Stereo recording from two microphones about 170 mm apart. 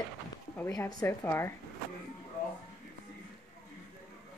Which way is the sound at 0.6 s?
20° left (ahead or behind).